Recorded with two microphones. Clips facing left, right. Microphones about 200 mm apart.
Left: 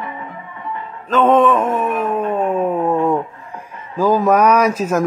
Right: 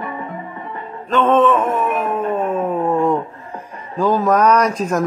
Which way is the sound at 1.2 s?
10° left (ahead or behind).